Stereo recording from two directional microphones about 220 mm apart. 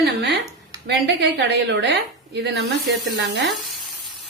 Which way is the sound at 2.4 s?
50° right (ahead or behind).